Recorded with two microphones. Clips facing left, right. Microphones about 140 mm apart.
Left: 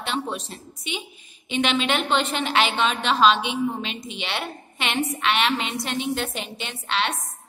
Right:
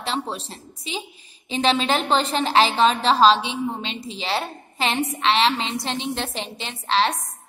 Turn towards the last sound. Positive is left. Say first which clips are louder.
# right 5 dB
turn(degrees=-35)  # may be behind; listen again after turning